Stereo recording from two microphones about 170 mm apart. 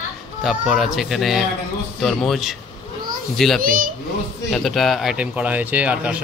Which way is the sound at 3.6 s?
55° right (ahead or behind).